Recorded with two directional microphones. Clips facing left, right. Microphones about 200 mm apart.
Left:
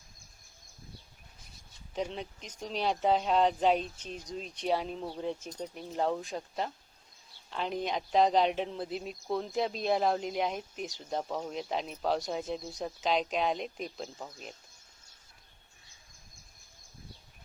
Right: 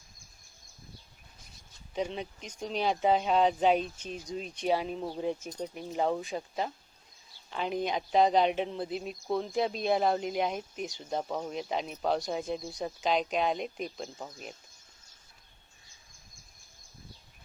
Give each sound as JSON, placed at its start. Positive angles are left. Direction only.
{"t": 2.0, "sound": "speech", "side_deg": 0}